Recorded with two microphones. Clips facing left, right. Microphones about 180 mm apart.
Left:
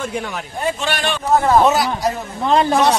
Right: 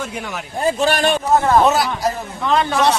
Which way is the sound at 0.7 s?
40° right (ahead or behind).